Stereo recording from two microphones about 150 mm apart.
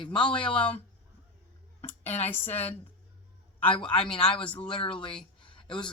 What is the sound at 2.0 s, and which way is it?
Speech, 45° left (ahead or behind).